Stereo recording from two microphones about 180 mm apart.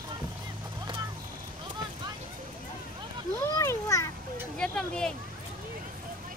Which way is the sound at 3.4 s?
15° left (ahead or behind).